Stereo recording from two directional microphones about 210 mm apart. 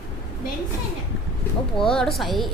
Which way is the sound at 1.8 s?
5° left (ahead or behind).